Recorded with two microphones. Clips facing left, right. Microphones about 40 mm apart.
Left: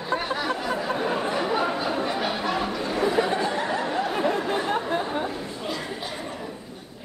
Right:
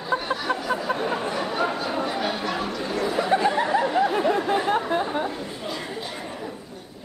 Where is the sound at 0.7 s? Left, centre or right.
Centre.